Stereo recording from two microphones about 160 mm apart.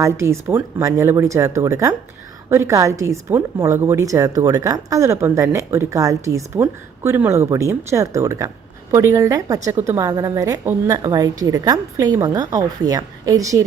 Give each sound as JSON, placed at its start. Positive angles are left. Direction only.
{"t": 0.0, "sound": "a woman's voice", "side_deg": -15}